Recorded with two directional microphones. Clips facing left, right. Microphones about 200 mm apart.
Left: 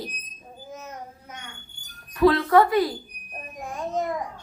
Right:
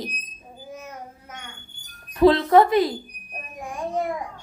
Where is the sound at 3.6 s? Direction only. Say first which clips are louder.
Right 1 dB; 15° right (ahead or behind).